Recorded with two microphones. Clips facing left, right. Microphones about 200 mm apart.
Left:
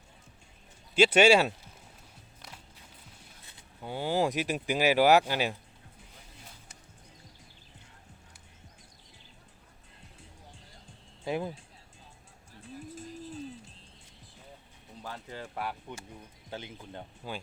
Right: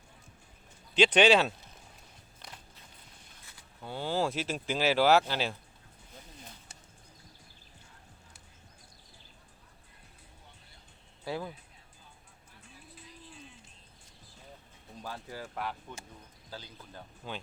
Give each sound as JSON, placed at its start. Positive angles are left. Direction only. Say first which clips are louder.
{"t": 0.9, "sound": "speech", "louder": "left 2 dB", "side_deg": 5}
{"t": 2.4, "sound": "walk", "louder": "even", "side_deg": 5}
{"t": 3.4, "sound": "speech", "louder": "left 3 dB", "side_deg": 15}
{"t": 11.2, "sound": "speech", "louder": "left 4 dB", "side_deg": 25}
{"t": 12.9, "sound": "music", "louder": "left 10 dB", "side_deg": 45}
{"t": 15.5, "sound": "speech", "louder": "left 2 dB", "side_deg": 10}
{"t": 16.5, "sound": "speech", "louder": "left 5 dB", "side_deg": 20}